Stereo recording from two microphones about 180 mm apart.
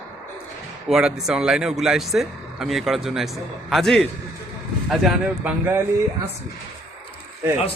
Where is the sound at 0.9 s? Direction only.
5° right (ahead or behind).